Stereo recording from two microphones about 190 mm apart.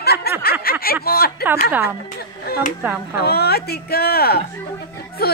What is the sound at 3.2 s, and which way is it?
Speech, 55° left (ahead or behind).